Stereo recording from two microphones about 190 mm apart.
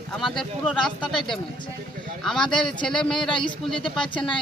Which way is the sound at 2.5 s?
5° left (ahead or behind).